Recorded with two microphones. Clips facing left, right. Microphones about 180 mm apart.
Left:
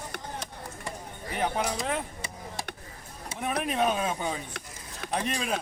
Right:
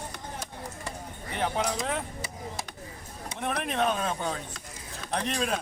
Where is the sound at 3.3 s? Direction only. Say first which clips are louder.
Left 1 dB; 5° left (ahead or behind).